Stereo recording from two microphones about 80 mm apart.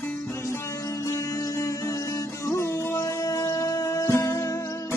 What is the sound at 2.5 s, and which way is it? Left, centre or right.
Music, left.